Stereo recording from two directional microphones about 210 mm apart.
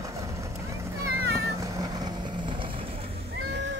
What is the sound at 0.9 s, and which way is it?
Cat, 15° right (ahead or behind).